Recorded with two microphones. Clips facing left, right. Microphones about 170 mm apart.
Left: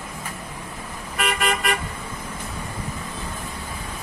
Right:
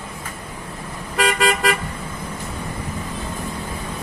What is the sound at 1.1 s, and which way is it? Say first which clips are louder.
Car: right 5 dB; 90° right.